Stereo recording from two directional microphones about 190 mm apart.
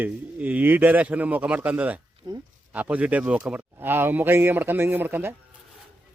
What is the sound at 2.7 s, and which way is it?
Speech, 10° right (ahead or behind).